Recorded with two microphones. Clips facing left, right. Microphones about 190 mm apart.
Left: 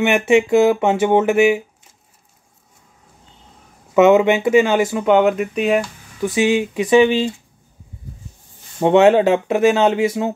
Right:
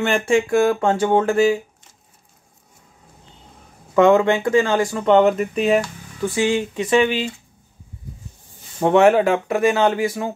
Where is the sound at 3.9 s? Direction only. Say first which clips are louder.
Left 2 dB; 20° left (ahead or behind).